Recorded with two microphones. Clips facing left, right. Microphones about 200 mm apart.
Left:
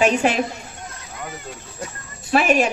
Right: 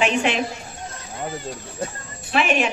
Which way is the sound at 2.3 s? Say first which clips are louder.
Left 3 dB; 40° left (ahead or behind).